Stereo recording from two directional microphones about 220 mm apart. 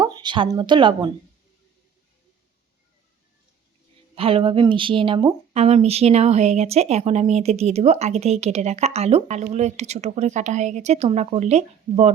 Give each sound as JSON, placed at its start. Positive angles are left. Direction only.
{"t": 0.0, "sound": "speech", "side_deg": -20}
{"t": 4.1, "sound": "speech", "side_deg": -25}